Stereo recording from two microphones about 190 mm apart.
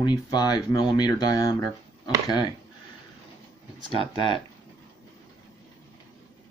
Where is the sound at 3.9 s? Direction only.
30° right (ahead or behind).